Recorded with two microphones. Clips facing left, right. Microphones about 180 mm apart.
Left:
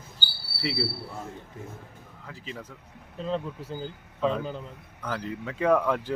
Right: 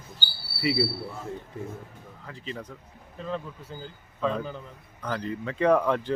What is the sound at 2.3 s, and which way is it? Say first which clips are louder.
Speech: right 2 dB; 5° left (ahead or behind).